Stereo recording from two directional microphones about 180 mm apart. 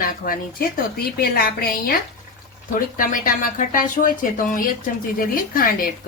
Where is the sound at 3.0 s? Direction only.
50° left (ahead or behind).